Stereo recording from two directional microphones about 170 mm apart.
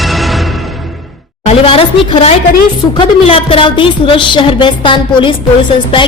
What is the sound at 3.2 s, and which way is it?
Music, 35° left (ahead or behind).